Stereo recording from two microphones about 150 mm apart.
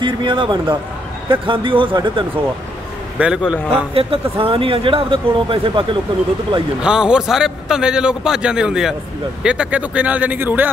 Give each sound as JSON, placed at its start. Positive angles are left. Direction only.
{"t": 0.0, "sound": "speech", "side_deg": -30}
{"t": 3.2, "sound": "speech", "side_deg": -10}
{"t": 3.9, "sound": "speech", "side_deg": -40}
{"t": 6.8, "sound": "a man's voice", "side_deg": -5}